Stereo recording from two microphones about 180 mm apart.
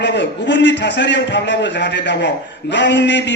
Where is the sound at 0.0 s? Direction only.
75° left (ahead or behind).